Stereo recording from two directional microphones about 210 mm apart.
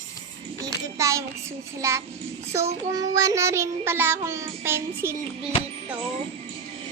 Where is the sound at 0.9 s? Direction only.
15° right (ahead or behind).